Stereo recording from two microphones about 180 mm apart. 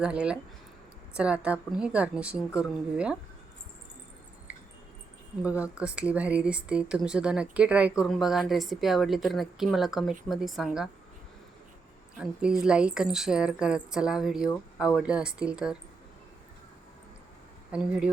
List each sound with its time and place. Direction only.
0.0 s speech: 5° right (ahead or behind)
5.4 s speech: 10° right (ahead or behind)
12.1 s speech: 5° right (ahead or behind)
17.7 s speech: 5° right (ahead or behind)